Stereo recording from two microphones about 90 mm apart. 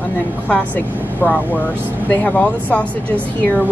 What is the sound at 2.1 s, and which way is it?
Speech, 15° left (ahead or behind).